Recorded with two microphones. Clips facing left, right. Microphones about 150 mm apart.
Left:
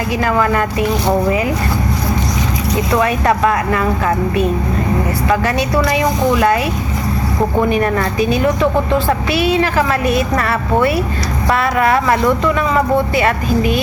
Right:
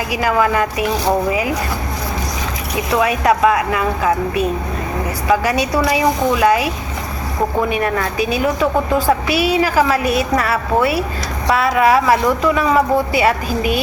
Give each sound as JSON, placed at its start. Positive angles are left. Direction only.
{"t": 0.1, "sound": "a woman's voice", "side_deg": -10}
{"t": 2.7, "sound": "a woman's voice", "side_deg": -10}
{"t": 5.3, "sound": "a woman's voice", "side_deg": -10}
{"t": 7.7, "sound": "a woman's voice", "side_deg": 0}